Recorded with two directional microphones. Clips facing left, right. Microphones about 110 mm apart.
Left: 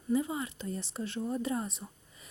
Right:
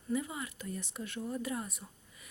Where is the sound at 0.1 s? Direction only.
25° left (ahead or behind).